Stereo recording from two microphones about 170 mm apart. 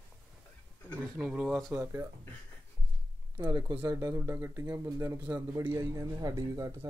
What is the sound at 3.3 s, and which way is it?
Speech, 15° right (ahead or behind).